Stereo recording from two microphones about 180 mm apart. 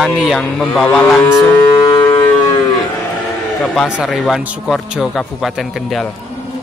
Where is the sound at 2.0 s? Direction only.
25° left (ahead or behind).